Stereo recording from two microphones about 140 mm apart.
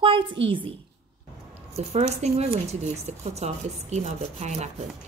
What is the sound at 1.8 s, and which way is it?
A woman's voice, 50° right (ahead or behind).